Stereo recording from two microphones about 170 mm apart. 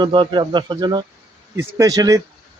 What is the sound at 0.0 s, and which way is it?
Speech, 30° right (ahead or behind).